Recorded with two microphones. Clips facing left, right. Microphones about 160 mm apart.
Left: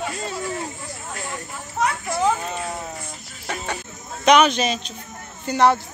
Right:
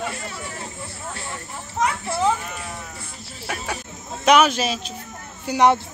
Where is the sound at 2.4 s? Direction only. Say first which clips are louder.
Left 6 dB; 30° left (ahead or behind).